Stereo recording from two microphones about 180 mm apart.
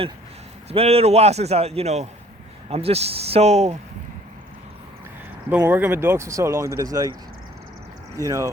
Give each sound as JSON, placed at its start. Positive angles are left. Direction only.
{"t": 0.7, "sound": "a man's voice", "side_deg": -35}
{"t": 5.5, "sound": "speech", "side_deg": -10}
{"t": 8.1, "sound": "speech", "side_deg": -15}